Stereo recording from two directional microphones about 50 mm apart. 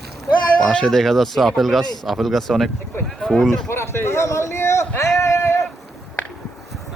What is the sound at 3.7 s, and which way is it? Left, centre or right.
Speech, left.